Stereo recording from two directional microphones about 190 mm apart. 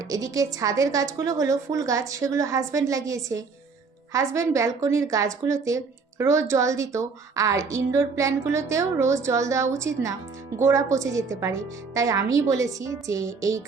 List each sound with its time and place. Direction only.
0.0 s a woman's voice: 20° right (ahead or behind)